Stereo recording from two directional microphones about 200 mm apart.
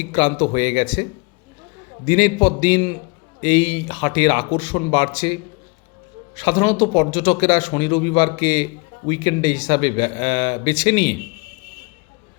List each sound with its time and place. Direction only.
0.1 s a man's voice: 25° left (ahead or behind)
2.0 s a man's voice: 25° left (ahead or behind)